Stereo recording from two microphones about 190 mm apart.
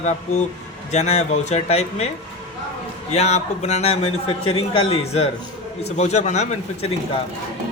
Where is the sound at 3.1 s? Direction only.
35° left (ahead or behind).